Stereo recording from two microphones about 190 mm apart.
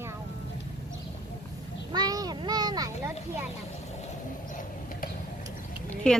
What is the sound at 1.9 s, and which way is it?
A child's voice, 20° right (ahead or behind).